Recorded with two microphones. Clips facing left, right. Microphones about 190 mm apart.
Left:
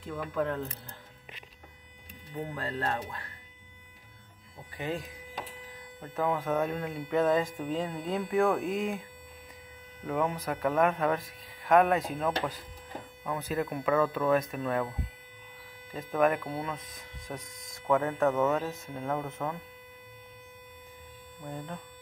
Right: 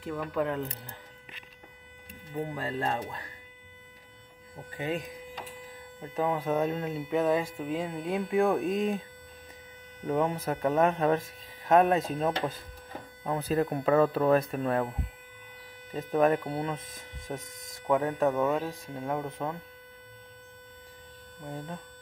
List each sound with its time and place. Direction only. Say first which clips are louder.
0.0 s speech: right 1 dB; 10° right (ahead or behind)
2.3 s speech: right 2 dB; 15° right (ahead or behind)
4.7 s speech: right 2 dB; 20° right (ahead or behind)
10.0 s speech: right 3 dB; 25° right (ahead or behind)
15.9 s speech: right 2 dB; 25° right (ahead or behind)